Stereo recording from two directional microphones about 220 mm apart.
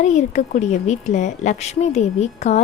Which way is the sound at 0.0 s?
30° left (ahead or behind).